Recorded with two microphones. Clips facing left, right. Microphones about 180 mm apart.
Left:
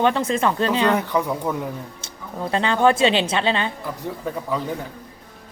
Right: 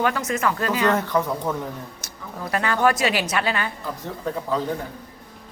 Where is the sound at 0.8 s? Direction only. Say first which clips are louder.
Left 1 dB; 15° left (ahead or behind).